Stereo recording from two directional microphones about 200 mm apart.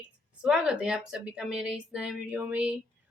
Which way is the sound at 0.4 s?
5° right (ahead or behind).